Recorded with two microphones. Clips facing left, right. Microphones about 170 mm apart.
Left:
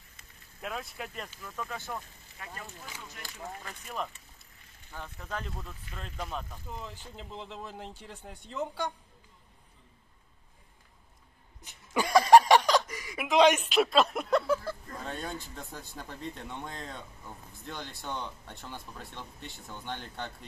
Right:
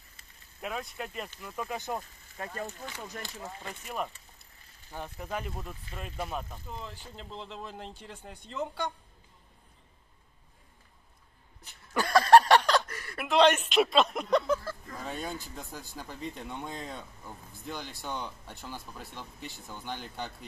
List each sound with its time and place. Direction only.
0.6 s speech: centre (ahead or behind); by 2.0 s 20° right (ahead or behind)
2.0 s speech: 40° right (ahead or behind)
3.8 s speech: 10° right (ahead or behind)
5.2 s speech: 10° right (ahead or behind)
6.7 s speech: 5° left (ahead or behind)
11.6 s a sound: 10° left (ahead or behind)
13.7 s speech: centre (ahead or behind)
14.9 s speech: 5° right (ahead or behind)